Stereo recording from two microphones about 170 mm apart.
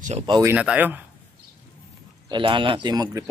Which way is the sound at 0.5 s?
10° right (ahead or behind).